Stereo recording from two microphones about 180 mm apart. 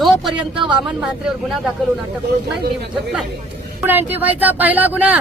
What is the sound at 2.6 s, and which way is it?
Speech, 65° right (ahead or behind).